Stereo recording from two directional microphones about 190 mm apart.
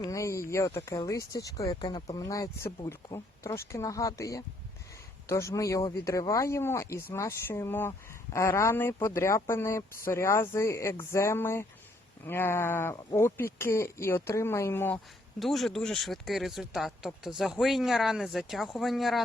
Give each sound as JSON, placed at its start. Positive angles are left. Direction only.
{"t": 0.0, "sound": "speech", "side_deg": 15}
{"t": 15.4, "sound": "speech", "side_deg": 0}